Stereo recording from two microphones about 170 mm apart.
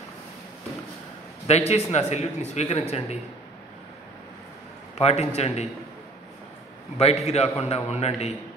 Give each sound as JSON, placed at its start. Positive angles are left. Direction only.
{"t": 1.5, "sound": "a man's voice", "side_deg": 40}
{"t": 4.9, "sound": "a man's voice", "side_deg": 40}
{"t": 7.0, "sound": "a man's voice", "side_deg": 40}